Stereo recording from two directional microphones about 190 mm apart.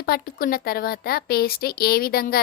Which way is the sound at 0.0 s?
50° left (ahead or behind).